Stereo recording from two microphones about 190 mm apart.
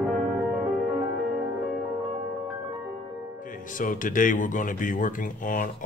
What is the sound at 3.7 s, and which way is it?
Speech, 45° left (ahead or behind).